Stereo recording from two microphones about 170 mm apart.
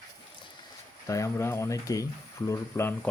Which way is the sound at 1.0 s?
20° left (ahead or behind).